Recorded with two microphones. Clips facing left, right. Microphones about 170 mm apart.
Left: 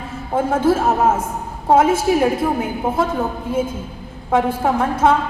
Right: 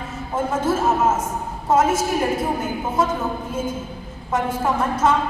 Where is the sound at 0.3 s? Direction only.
55° left (ahead or behind).